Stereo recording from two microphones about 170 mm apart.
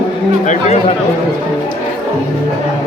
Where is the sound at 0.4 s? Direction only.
40° left (ahead or behind).